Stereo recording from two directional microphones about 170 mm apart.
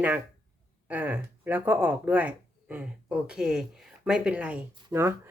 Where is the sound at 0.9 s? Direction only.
10° right (ahead or behind).